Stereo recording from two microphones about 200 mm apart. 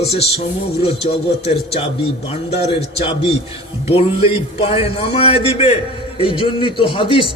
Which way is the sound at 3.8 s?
30° left (ahead or behind).